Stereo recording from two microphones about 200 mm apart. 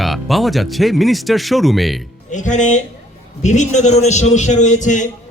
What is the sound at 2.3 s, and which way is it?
A man's voice, 40° left (ahead or behind).